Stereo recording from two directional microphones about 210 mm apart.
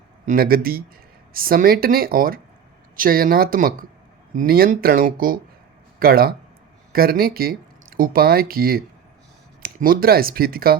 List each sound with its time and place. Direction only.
0.3 s speech: 45° right (ahead or behind)